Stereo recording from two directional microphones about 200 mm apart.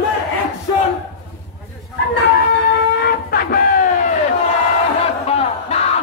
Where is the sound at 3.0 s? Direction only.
50° left (ahead or behind).